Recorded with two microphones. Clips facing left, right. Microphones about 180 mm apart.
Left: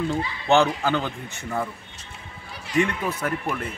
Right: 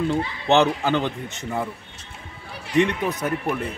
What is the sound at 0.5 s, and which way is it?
A man's voice, 20° right (ahead or behind).